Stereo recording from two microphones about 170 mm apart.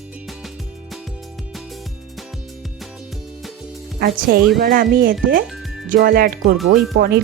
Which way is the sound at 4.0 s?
60° right (ahead or behind).